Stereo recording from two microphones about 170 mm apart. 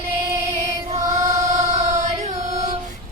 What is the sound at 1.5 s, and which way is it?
Music, 45° right (ahead or behind).